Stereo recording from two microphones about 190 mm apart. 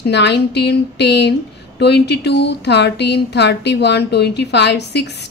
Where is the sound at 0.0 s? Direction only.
65° left (ahead or behind).